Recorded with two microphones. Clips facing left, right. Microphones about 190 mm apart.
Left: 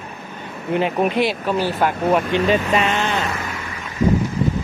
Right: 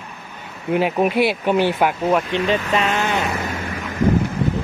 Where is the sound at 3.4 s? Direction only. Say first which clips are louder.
Right 4 dB; 45° right (ahead or behind).